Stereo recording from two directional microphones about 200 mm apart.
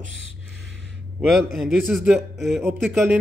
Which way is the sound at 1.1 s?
Centre (ahead or behind).